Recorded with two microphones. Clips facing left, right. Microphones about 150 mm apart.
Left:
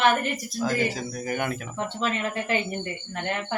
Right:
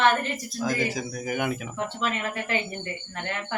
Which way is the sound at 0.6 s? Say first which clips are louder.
Left 1 dB; 10° right (ahead or behind).